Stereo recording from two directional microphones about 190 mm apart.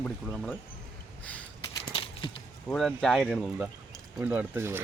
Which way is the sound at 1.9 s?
30° left (ahead or behind).